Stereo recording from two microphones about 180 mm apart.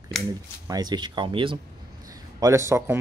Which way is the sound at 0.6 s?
20° right (ahead or behind).